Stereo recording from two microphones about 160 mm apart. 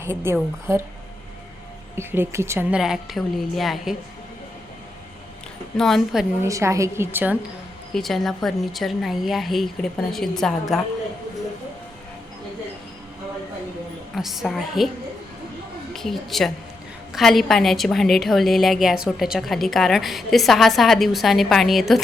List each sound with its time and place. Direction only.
0.0 s a woman's voice: 15° right (ahead or behind)
2.0 s a woman's voice: 15° right (ahead or behind); by 3.9 s centre (ahead or behind)
5.7 s a woman's voice: centre (ahead or behind)
6.4 s a woman's voice: 20° right (ahead or behind)
7.9 s a woman's voice: centre (ahead or behind)
14.2 s a woman's voice: centre (ahead or behind)
15.9 s a woman's voice: centre (ahead or behind)